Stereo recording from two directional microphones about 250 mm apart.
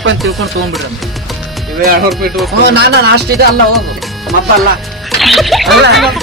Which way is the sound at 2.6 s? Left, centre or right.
Right.